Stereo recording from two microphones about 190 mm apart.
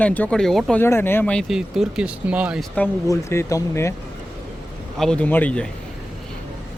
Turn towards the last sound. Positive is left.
turn(degrees=5)  # may be behind; listen again after turning